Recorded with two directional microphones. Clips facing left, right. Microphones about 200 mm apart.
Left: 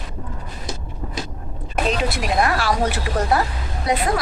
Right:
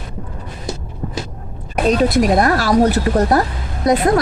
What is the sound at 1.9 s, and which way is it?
Speech, 40° right (ahead or behind).